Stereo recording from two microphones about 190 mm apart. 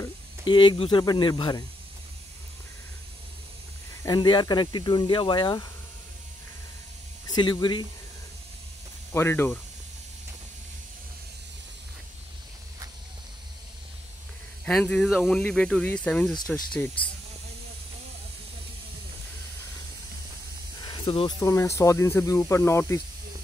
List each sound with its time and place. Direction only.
0.0 s speech: 25° left (ahead or behind)
4.0 s speech: 20° left (ahead or behind)
7.2 s speech: 20° left (ahead or behind)
9.1 s speech: 10° left (ahead or behind)
14.6 s speech: 5° left (ahead or behind)
20.8 s speech: 25° left (ahead or behind)